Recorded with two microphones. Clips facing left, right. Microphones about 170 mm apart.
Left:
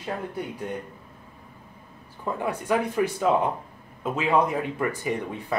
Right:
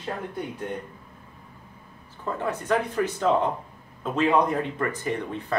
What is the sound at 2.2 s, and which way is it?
Speech, 10° left (ahead or behind).